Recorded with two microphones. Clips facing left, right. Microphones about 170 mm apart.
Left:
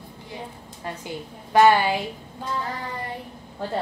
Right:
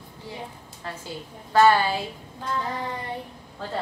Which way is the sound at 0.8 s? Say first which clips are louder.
Left 3 dB; 15° left (ahead or behind).